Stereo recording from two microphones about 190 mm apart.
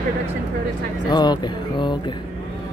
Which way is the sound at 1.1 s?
20° left (ahead or behind).